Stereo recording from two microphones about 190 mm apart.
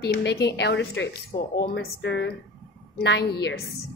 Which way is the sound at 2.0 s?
70° left (ahead or behind).